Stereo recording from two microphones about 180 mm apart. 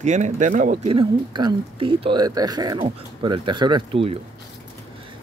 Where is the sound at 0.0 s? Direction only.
40° right (ahead or behind).